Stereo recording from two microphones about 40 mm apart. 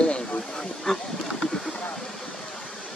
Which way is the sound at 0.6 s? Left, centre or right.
Centre.